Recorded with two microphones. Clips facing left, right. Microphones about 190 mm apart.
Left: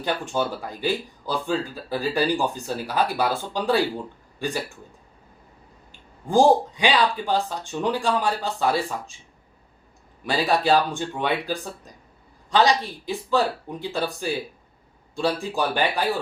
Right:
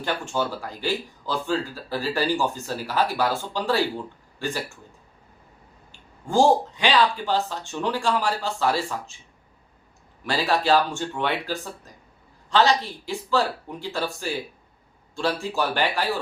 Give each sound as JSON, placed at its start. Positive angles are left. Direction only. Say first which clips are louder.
{"t": 0.0, "sound": "speech", "louder": "left 1 dB", "side_deg": 15}
{"t": 6.2, "sound": "speech", "louder": "left 2 dB", "side_deg": 15}
{"t": 10.2, "sound": "speech", "louder": "left 1 dB", "side_deg": 15}